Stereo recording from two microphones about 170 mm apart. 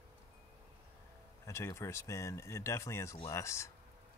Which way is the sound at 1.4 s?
15° left (ahead or behind).